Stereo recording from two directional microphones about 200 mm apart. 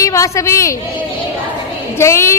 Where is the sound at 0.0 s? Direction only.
15° left (ahead or behind).